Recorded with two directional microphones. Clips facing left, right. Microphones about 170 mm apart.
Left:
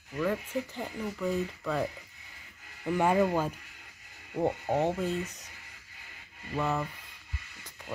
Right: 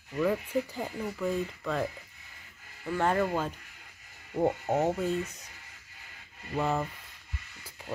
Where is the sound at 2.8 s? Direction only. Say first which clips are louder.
Left 2 dB; 15° left (ahead or behind).